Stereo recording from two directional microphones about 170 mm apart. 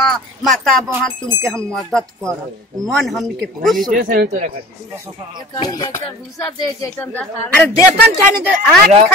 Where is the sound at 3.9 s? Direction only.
55° right (ahead or behind).